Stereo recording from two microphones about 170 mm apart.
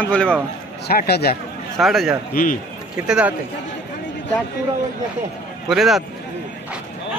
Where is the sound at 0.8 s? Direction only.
70° left (ahead or behind).